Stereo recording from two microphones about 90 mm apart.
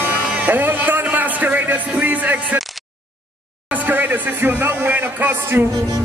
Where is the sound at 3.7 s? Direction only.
20° right (ahead or behind).